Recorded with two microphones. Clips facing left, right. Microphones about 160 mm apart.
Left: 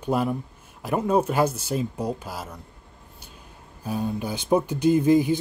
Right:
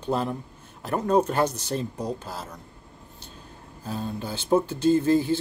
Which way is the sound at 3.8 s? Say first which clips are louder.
Left 4 dB; 15° left (ahead or behind).